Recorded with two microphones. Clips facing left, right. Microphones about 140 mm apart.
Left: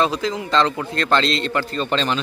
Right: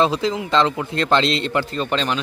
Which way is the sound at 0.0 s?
25° right (ahead or behind).